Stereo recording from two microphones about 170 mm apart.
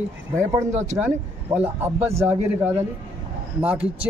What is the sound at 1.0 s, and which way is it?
A man's voice, 10° right (ahead or behind).